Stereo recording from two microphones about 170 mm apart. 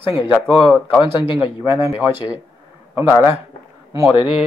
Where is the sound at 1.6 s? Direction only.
15° right (ahead or behind).